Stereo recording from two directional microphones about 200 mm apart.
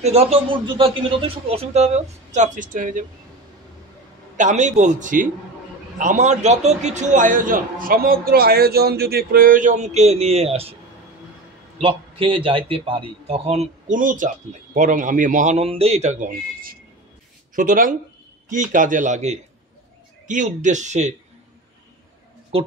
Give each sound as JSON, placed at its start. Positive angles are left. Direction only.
{"t": 0.0, "sound": "a man's voice", "side_deg": -30}
{"t": 4.4, "sound": "a man's voice", "side_deg": -35}
{"t": 11.8, "sound": "a man's voice", "side_deg": -25}
{"t": 22.5, "sound": "speech", "side_deg": -30}